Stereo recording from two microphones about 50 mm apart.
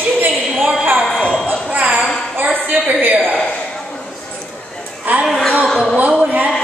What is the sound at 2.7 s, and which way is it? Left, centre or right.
Speech, right.